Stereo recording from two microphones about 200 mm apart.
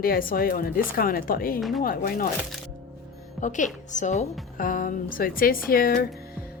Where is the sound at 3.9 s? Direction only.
35° left (ahead or behind).